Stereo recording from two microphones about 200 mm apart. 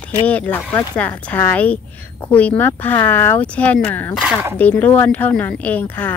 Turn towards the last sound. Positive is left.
turn(degrees=10)  # may be behind; listen again after turning